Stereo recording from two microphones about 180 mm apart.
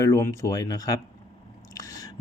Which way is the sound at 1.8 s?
20° left (ahead or behind).